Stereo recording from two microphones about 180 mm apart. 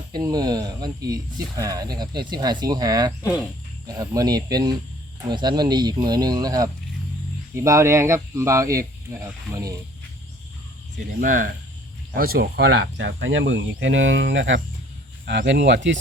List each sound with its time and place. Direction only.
0.1 s speech: 20° right (ahead or behind)
10.9 s speech: 45° right (ahead or behind); by 14.6 s 90° right
15.3 s speech: 75° right (ahead or behind)